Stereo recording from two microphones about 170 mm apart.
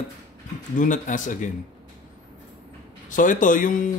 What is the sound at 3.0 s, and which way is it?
Speech, 50° left (ahead or behind).